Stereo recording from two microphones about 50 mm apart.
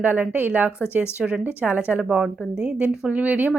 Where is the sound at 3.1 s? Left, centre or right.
Right.